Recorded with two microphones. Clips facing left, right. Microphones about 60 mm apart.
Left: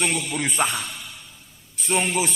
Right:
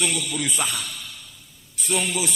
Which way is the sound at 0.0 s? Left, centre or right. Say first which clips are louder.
Left 1 dB; left.